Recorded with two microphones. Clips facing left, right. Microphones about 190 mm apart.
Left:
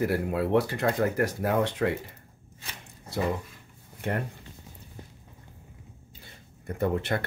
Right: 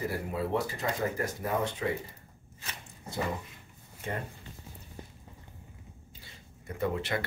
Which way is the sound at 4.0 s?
65° left (ahead or behind).